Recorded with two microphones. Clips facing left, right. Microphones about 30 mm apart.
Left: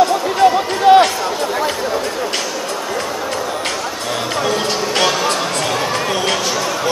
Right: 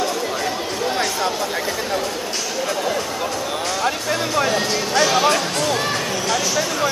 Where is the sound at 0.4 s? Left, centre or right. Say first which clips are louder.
Left 10 dB; left.